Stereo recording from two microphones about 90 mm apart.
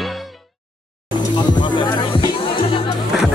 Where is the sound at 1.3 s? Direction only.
55° left (ahead or behind); by 2.8 s 75° left (ahead or behind).